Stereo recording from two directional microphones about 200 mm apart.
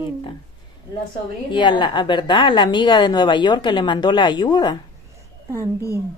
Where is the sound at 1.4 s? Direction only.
20° left (ahead or behind).